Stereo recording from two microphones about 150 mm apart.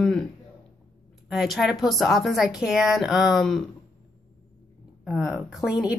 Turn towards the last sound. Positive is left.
turn(degrees=-5)  # may be behind; listen again after turning